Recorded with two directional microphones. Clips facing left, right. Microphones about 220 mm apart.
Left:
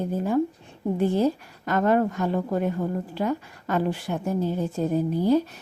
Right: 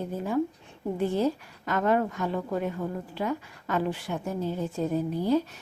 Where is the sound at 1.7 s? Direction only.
40° left (ahead or behind).